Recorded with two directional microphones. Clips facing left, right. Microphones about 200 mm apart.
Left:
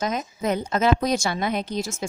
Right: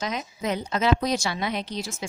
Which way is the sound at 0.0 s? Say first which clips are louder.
Left 4 dB; 50° left (ahead or behind).